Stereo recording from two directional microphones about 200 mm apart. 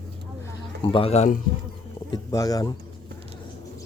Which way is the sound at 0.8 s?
25° left (ahead or behind).